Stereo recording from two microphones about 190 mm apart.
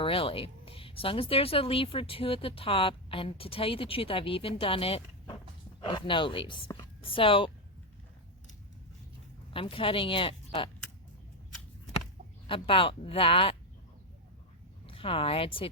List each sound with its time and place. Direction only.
0.0 s speech: 30° left (ahead or behind)
9.5 s speech: 30° left (ahead or behind)
12.5 s speech: 30° left (ahead or behind)
14.8 s speech: 30° left (ahead or behind)